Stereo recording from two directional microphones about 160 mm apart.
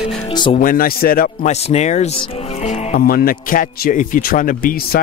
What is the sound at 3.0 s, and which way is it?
A man's voice, 65° left (ahead or behind).